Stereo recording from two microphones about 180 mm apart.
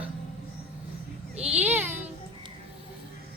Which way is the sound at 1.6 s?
10° right (ahead or behind).